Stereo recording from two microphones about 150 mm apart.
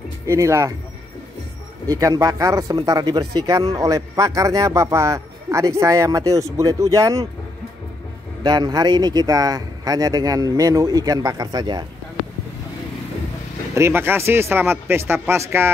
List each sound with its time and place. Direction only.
0.3 s speech: 20° right (ahead or behind)
1.9 s speech: 25° right (ahead or behind)
8.5 s speech: 25° right (ahead or behind)
13.7 s speech: 15° right (ahead or behind)